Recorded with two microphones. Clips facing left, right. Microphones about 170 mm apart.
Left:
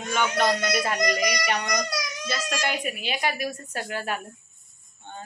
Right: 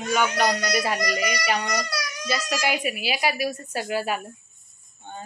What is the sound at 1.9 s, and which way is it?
Baby cry, 20° left (ahead or behind).